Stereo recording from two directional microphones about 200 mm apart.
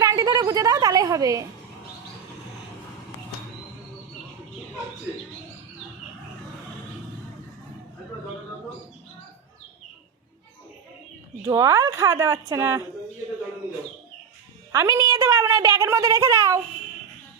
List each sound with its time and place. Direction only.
0.0 s a sound: 15° right (ahead or behind)
11.4 s a woman's voice: 15° right (ahead or behind)
14.7 s a woman's voice: 15° right (ahead or behind)